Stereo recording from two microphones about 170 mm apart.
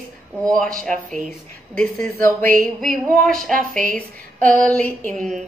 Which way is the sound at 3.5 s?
50° right (ahead or behind).